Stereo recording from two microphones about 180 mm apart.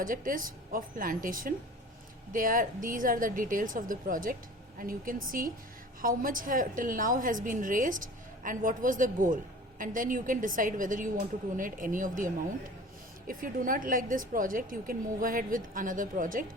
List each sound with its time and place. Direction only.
0.0 s a woman's voice: 50° right (ahead or behind)